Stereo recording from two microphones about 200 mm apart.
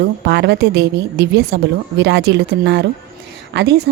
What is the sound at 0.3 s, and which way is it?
A woman's voice, 55° right (ahead or behind).